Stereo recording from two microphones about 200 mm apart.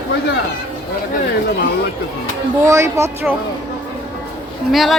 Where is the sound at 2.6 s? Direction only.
15° right (ahead or behind).